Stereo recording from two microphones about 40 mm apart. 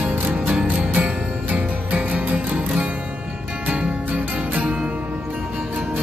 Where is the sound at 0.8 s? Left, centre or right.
Right.